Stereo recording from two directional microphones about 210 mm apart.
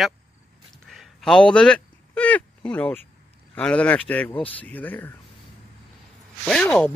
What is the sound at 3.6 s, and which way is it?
Speech, 5° left (ahead or behind).